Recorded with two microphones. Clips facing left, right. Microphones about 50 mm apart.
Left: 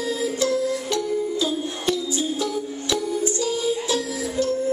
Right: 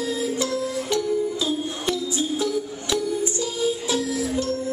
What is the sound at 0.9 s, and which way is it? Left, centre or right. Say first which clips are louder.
Music: right 1 dB; right.